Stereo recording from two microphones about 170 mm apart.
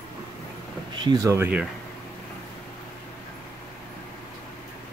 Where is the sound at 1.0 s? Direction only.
20° right (ahead or behind).